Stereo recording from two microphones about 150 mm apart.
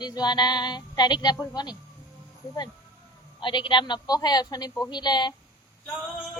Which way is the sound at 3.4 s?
35° left (ahead or behind).